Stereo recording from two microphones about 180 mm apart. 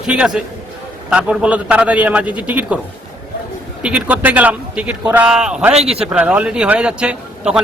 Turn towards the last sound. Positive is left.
turn(degrees=-5)  # may be behind; listen again after turning